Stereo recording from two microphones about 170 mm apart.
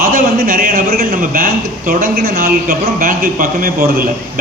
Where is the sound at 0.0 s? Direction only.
55° right (ahead or behind).